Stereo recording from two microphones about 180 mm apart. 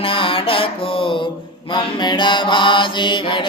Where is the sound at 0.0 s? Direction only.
30° left (ahead or behind).